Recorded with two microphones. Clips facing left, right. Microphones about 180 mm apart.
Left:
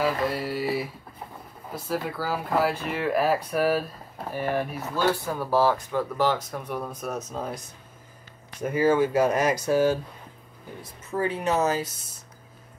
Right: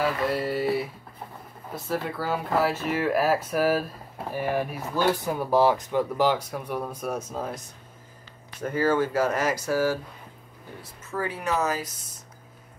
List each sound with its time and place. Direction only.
0.3 s speech: centre (ahead or behind)
8.6 s speech: 15° left (ahead or behind)